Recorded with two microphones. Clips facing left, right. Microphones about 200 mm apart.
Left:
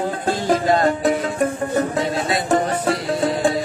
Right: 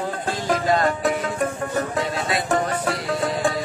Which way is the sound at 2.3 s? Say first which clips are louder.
Left 3 dB; 25° left (ahead or behind).